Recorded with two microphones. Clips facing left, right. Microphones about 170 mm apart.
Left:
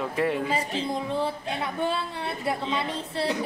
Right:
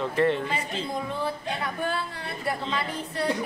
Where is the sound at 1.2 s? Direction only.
25° left (ahead or behind).